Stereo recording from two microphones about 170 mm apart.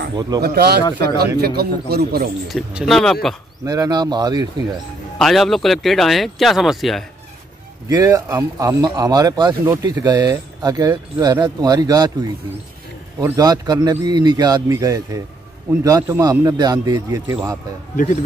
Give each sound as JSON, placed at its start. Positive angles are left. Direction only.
{"t": 0.1, "sound": "speech", "side_deg": -25}
{"t": 0.4, "sound": "a man's voice", "side_deg": -70}
{"t": 2.4, "sound": "speech", "side_deg": 0}
{"t": 3.6, "sound": "speech", "side_deg": -20}
{"t": 5.2, "sound": "speech", "side_deg": 0}
{"t": 7.9, "sound": "speech", "side_deg": -20}
{"t": 17.9, "sound": "a man's voice", "side_deg": 50}